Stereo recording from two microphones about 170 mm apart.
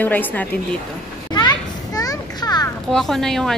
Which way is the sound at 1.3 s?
25° left (ahead or behind).